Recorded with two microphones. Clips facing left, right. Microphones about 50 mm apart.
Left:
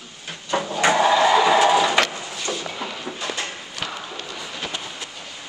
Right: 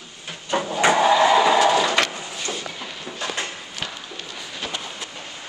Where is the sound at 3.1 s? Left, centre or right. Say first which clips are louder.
Left 3 dB; centre.